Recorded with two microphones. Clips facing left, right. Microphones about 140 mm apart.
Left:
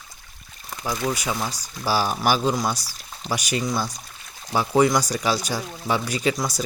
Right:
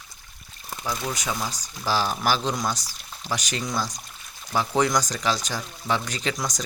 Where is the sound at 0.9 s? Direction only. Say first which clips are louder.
Left 4 dB; 10° left (ahead or behind).